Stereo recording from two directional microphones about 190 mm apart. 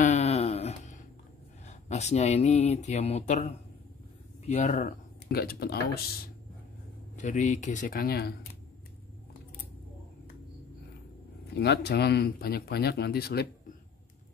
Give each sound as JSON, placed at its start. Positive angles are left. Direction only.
{"t": 0.0, "sound": "a sound", "side_deg": 35}
{"t": 1.7, "sound": "speech", "side_deg": 35}
{"t": 4.7, "sound": "speech", "side_deg": 55}
{"t": 7.2, "sound": "speech", "side_deg": 40}
{"t": 11.5, "sound": "speech", "side_deg": 60}